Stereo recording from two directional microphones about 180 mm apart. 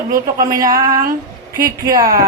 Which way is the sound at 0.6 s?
20° right (ahead or behind).